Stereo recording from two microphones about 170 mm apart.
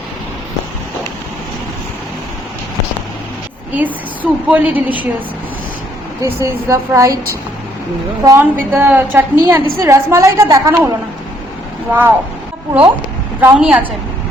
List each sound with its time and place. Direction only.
3.7 s a woman's voice: 10° right (ahead or behind)
6.2 s a woman's voice: 20° right (ahead or behind)
8.2 s a woman's voice: 20° right (ahead or behind)
13.4 s a woman's voice: 5° right (ahead or behind)